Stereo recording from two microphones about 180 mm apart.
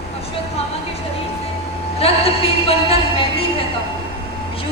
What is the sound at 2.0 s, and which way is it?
Music, 35° left (ahead or behind).